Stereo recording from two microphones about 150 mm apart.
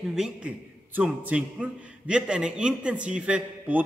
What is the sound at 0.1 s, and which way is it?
A man's voice, 5° right (ahead or behind).